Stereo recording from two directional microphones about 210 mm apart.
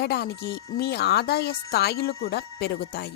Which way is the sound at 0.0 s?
50° left (ahead or behind).